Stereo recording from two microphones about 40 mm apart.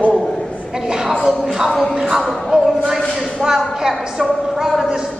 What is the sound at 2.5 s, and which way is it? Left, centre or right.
A woman's voice, right.